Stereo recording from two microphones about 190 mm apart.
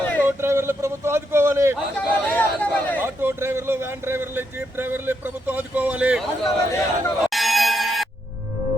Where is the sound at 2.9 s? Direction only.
10° right (ahead or behind).